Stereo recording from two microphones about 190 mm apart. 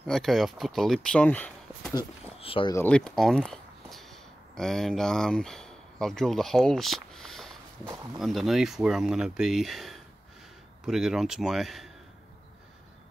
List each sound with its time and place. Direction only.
0.0 s speech: centre (ahead or behind)
2.0 s speech: 25° left (ahead or behind)
2.7 s speech: 10° left (ahead or behind)
7.8 s speech: 15° right (ahead or behind)
8.2 s speech: centre (ahead or behind)